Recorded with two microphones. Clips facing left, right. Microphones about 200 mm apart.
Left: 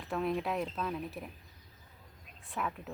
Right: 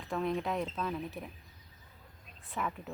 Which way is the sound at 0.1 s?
Centre (ahead or behind).